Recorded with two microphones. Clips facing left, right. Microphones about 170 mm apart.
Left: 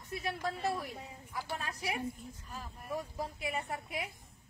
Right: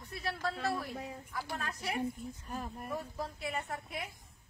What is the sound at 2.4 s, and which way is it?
Speech, 55° right (ahead or behind).